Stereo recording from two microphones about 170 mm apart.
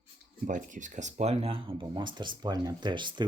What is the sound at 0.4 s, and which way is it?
Speech, 50° right (ahead or behind).